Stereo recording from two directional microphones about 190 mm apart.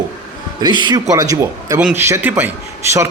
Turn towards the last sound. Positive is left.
turn(degrees=-15)  # may be behind; listen again after turning